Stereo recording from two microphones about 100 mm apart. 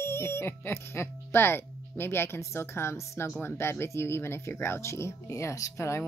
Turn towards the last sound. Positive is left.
turn(degrees=30)  # may be behind; listen again after turning